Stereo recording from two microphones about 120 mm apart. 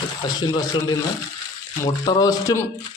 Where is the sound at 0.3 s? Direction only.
35° left (ahead or behind).